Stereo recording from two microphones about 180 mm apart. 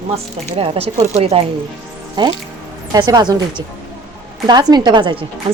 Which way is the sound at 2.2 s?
25° right (ahead or behind).